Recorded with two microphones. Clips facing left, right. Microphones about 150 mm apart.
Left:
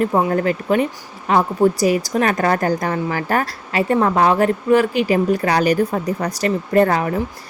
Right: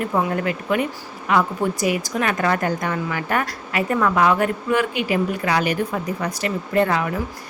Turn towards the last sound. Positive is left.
turn(degrees=40)  # may be behind; listen again after turning